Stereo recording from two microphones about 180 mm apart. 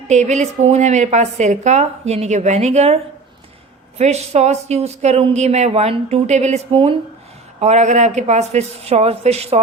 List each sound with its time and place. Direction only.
0.1 s speech: 40° right (ahead or behind)